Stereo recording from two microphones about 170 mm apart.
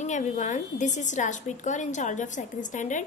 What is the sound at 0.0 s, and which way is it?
A woman's voice, 45° left (ahead or behind).